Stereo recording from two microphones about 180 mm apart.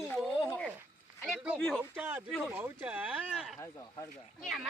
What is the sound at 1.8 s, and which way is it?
Speech, 10° right (ahead or behind).